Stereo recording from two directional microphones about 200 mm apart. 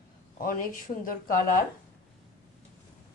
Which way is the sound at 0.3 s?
45° left (ahead or behind).